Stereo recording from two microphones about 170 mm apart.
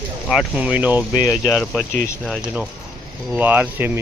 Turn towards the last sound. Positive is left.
turn(degrees=-10)  # may be behind; listen again after turning